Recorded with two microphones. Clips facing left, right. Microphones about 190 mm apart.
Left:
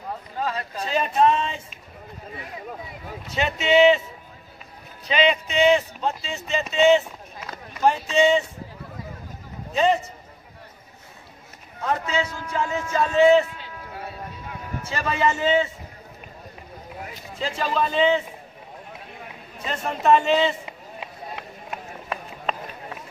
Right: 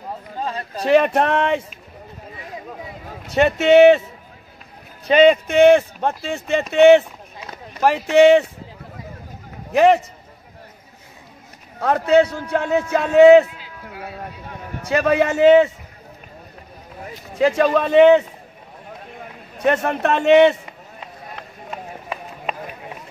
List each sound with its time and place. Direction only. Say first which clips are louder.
0.4 s a sound: right 1 dB; 30° right (ahead or behind)
0.8 s speech: right 5 dB; 70° right (ahead or behind)
3.3 s speech: right 7 dB; 55° right (ahead or behind)
5.0 s speech: right 9 dB; 50° right (ahead or behind); by 8.5 s 65° right (ahead or behind)
9.7 s a man's voice: right 7 dB; 70° right (ahead or behind)
12.1 s speech: right 12 dB; 65° right (ahead or behind)
14.8 s speech: right 8 dB; 65° right (ahead or behind)
17.4 s speech: right 9 dB; 65° right (ahead or behind)
19.6 s speech: right 6 dB; 70° right (ahead or behind)